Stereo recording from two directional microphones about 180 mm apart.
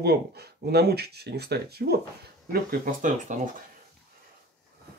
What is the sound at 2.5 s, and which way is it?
Speech, 45° right (ahead or behind).